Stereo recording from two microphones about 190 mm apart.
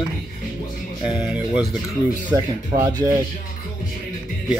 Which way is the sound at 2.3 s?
20° right (ahead or behind).